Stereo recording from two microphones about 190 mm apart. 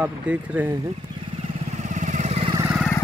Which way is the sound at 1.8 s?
40° right (ahead or behind).